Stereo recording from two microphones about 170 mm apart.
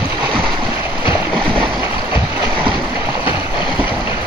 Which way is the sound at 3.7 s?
10° right (ahead or behind).